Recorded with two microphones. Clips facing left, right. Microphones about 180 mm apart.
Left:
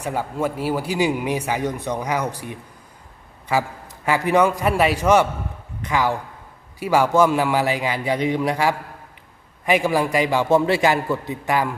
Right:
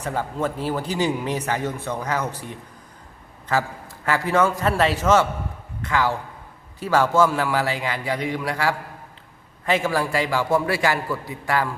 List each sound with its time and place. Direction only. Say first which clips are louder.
0.0 s a man's voice: left 1 dB; 10° left (ahead or behind)